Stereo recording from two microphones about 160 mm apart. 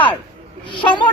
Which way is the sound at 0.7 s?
30° left (ahead or behind).